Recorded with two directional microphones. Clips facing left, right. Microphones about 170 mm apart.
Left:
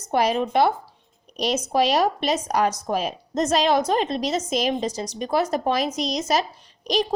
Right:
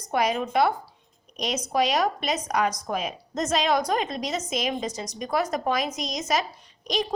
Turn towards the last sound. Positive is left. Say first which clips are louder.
# left 4 dB
turn(degrees=35)  # may be behind; listen again after turning